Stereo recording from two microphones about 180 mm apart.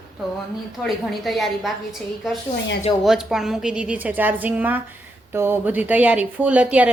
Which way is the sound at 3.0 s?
Centre (ahead or behind).